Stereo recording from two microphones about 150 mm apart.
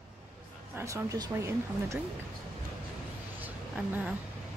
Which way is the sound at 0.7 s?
20° right (ahead or behind).